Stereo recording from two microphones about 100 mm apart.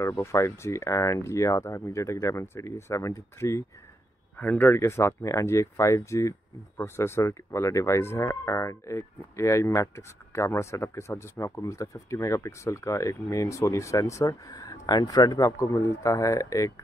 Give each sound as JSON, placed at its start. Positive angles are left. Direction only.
{"t": 0.0, "sound": "speech", "side_deg": 30}
{"t": 4.4, "sound": "speech", "side_deg": 15}